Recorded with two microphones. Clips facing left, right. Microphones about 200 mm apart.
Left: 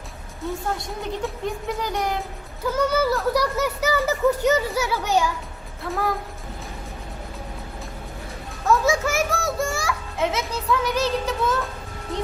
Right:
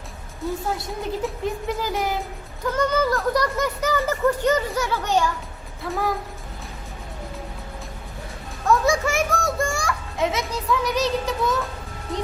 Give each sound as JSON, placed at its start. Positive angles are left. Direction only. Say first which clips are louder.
{"t": 0.4, "sound": "a woman's voice", "louder": "right 1 dB", "side_deg": 0}
{"t": 8.6, "sound": "children playing", "louder": "even", "side_deg": 0}
{"t": 12.1, "sound": "speech", "louder": "even", "side_deg": 0}